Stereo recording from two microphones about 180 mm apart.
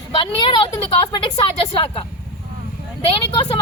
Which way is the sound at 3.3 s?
30° left (ahead or behind).